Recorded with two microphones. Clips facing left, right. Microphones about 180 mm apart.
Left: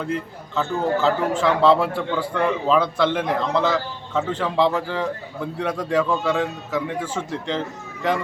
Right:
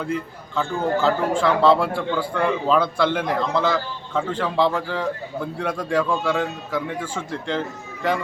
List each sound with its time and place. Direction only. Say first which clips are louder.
0.0 s a man's voice: even; centre (ahead or behind)